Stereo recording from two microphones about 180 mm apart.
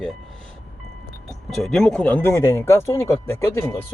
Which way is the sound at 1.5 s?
5° left (ahead or behind).